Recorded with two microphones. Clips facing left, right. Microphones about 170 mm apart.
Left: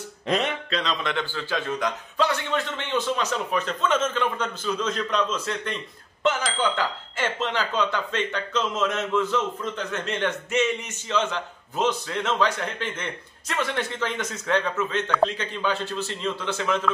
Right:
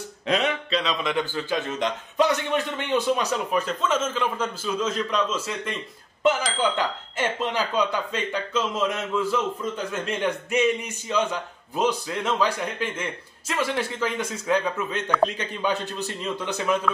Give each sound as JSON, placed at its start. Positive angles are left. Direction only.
{"t": 0.7, "sound": "speech", "side_deg": -5}
{"t": 6.8, "sound": "speech", "side_deg": -15}